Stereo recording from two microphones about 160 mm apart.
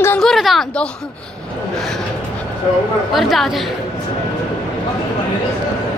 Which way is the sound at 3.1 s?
Centre (ahead or behind).